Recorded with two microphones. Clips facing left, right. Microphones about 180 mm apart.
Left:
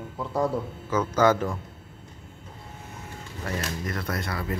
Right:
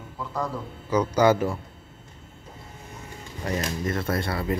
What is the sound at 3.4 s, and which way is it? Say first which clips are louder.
Speech: right 4 dB; 20° right (ahead or behind).